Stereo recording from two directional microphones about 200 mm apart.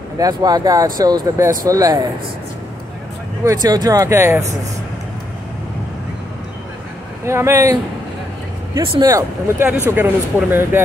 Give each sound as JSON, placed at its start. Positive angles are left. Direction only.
{"t": 0.2, "sound": "speech", "side_deg": -20}
{"t": 3.4, "sound": "speech", "side_deg": -20}
{"t": 7.2, "sound": "speech", "side_deg": -15}
{"t": 9.0, "sound": "speech", "side_deg": -15}